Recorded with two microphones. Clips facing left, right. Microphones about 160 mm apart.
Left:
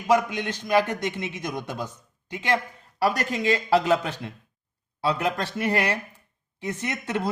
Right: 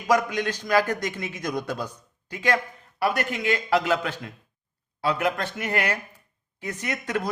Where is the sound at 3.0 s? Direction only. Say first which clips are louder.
Left 1 dB; 35° left (ahead or behind).